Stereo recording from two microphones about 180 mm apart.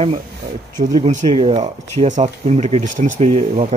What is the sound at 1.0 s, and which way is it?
Speech, 40° right (ahead or behind).